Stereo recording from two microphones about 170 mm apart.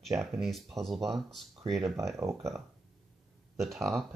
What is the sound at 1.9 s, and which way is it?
Speech, 15° right (ahead or behind).